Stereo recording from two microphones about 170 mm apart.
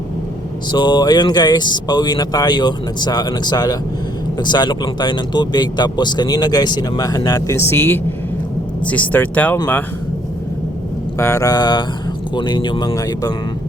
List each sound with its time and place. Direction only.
0.7 s speech: 25° left (ahead or behind); by 9.6 s 10° left (ahead or behind)
11.2 s speech: 20° left (ahead or behind)